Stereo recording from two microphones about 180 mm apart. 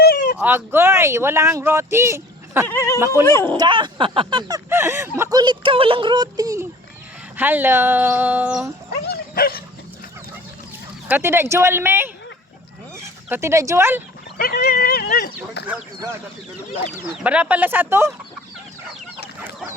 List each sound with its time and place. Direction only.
0.0 s a sound: 55° left (ahead or behind)
0.4 s speech: 10° right (ahead or behind)
2.6 s speech: 15° left (ahead or behind)
3.6 s speech: 25° right (ahead or behind); by 8.7 s 10° right (ahead or behind)
9.0 s dog: 60° left (ahead or behind)
11.1 s speech: 15° right (ahead or behind)
13.2 s speech: 15° right (ahead or behind)
14.3 s speech: 60° left (ahead or behind)
17.2 s speech: 5° right (ahead or behind)
19.4 s chicken: 10° right (ahead or behind)